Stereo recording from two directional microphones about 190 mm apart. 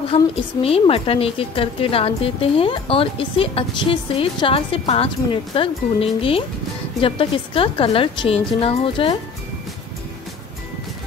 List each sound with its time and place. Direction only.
0.1 s a woman's voice: 30° left (ahead or behind)